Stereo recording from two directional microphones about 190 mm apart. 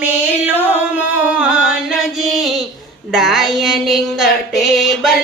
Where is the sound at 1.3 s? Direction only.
5° right (ahead or behind).